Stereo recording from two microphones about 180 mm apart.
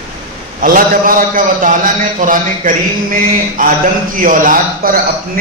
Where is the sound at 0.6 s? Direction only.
50° right (ahead or behind).